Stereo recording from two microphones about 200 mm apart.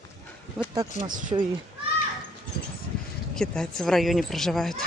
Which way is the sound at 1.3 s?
20° right (ahead or behind).